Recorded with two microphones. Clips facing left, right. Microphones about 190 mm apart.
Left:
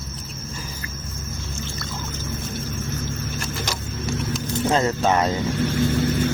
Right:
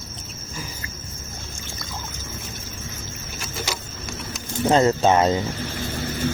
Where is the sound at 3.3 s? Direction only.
5° right (ahead or behind).